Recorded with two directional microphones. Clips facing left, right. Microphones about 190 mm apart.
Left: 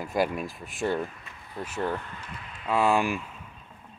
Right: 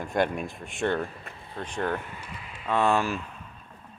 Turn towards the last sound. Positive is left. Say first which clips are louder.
# even
turn(degrees=10)  # may be behind; listen again after turning